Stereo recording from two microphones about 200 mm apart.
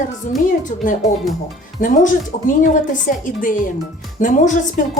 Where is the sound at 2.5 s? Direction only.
40° left (ahead or behind).